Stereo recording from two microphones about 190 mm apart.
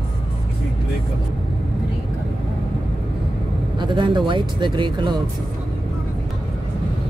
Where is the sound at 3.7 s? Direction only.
25° right (ahead or behind).